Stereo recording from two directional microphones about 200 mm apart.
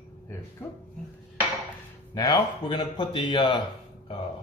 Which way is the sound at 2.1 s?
20° left (ahead or behind).